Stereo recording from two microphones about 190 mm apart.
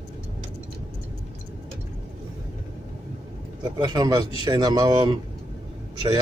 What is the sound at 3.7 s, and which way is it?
A man's voice, 20° right (ahead or behind).